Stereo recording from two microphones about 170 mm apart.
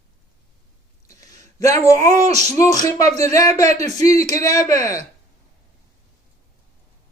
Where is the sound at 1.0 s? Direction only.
20° left (ahead or behind).